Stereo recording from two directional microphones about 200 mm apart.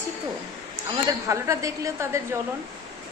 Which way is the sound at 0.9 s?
15° right (ahead or behind).